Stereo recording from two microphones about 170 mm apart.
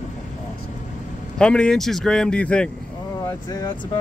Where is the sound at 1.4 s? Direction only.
5° left (ahead or behind).